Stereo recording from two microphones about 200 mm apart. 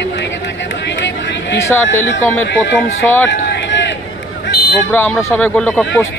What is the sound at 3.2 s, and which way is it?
Run, 60° left (ahead or behind).